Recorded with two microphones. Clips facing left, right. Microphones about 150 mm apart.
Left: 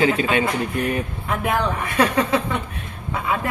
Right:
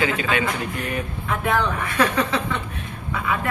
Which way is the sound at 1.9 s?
25° left (ahead or behind).